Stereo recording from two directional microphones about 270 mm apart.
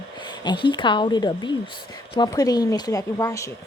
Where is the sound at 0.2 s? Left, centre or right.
Centre.